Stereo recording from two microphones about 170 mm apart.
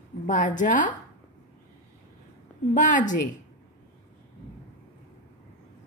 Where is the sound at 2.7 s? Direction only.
50° left (ahead or behind).